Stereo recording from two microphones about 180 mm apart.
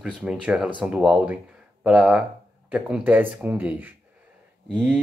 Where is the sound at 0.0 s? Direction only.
5° right (ahead or behind).